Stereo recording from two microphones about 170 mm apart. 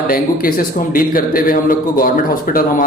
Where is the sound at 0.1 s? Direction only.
60° left (ahead or behind).